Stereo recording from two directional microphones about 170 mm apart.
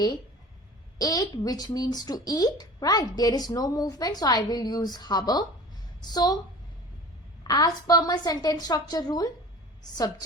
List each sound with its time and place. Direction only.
0.9 s speech: 25° left (ahead or behind)
7.4 s speech: 20° left (ahead or behind)